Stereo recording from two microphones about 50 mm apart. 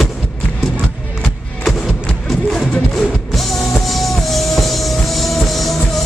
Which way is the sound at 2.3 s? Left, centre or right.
Centre.